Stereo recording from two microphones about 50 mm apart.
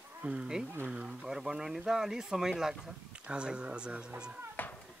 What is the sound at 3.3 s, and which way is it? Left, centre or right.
Speech, centre.